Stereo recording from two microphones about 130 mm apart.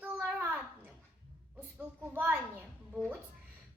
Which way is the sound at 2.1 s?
15° right (ahead or behind).